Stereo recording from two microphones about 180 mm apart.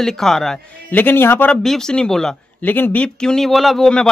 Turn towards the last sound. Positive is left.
turn(degrees=5)  # may be behind; listen again after turning